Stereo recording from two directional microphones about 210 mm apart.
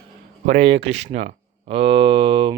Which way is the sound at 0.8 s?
30° right (ahead or behind).